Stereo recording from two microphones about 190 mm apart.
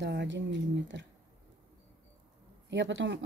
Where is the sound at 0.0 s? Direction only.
65° right (ahead or behind).